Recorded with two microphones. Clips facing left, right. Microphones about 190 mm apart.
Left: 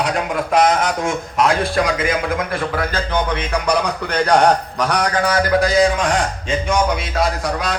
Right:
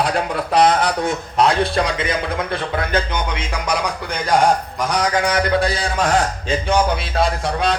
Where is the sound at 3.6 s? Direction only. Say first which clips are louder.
Left 2 dB; 70° left (ahead or behind).